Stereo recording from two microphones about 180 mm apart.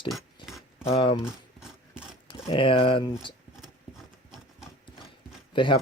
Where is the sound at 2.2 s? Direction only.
30° left (ahead or behind).